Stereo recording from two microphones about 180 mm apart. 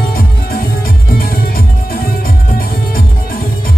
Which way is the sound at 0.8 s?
55° left (ahead or behind).